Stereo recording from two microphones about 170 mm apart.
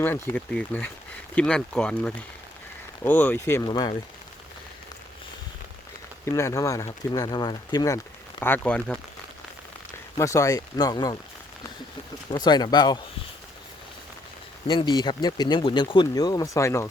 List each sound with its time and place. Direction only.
0.0 s speech: 10° left (ahead or behind)
6.3 s speech: 20° left (ahead or behind)
10.2 s speech: 20° left (ahead or behind)
12.3 s speech: 25° left (ahead or behind)
14.7 s speech: 25° left (ahead or behind)